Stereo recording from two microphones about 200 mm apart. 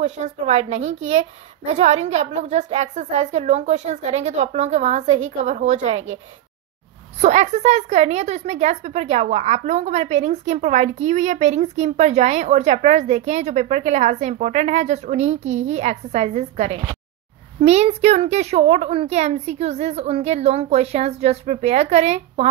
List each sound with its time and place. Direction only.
0.0 s a woman's voice: 35° right (ahead or behind)
7.2 s a woman's voice: 35° right (ahead or behind)